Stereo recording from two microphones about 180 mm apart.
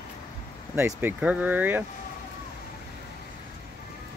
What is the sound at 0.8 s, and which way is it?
Speech, 10° right (ahead or behind).